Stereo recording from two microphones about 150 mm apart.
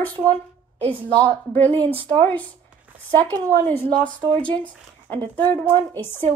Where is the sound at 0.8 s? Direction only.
35° right (ahead or behind).